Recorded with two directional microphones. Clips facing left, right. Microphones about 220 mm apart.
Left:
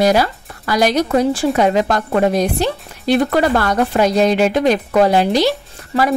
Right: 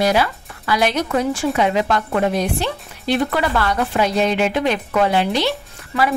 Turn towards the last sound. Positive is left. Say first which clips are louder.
# left 3 dB
turn(degrees=40)  # may be behind; listen again after turning